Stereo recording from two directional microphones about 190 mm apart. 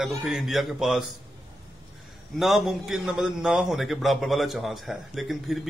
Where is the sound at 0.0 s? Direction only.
Centre (ahead or behind).